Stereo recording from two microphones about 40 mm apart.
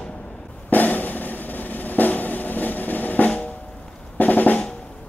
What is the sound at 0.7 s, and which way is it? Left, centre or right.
Drum, left.